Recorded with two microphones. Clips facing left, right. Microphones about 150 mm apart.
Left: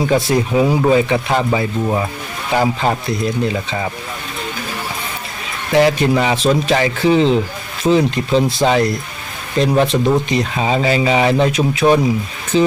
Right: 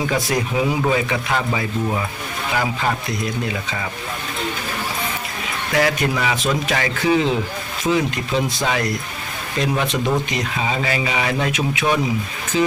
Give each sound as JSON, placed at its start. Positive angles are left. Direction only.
{"t": 0.0, "sound": "speech", "side_deg": 30}
{"t": 5.7, "sound": "speech", "side_deg": 30}